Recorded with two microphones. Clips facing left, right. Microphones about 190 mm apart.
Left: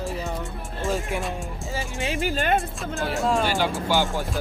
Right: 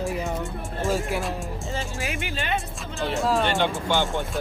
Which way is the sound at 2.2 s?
45° left (ahead or behind).